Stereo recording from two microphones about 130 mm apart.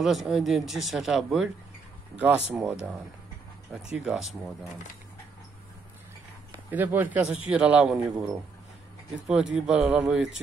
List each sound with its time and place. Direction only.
0.0 s speech: 5° right (ahead or behind)
3.9 s speech: 5° right (ahead or behind)
6.7 s speech: 15° right (ahead or behind)
9.3 s speech: 5° right (ahead or behind)